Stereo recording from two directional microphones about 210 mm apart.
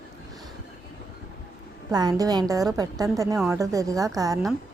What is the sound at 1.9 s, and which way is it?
A woman's voice, 20° right (ahead or behind).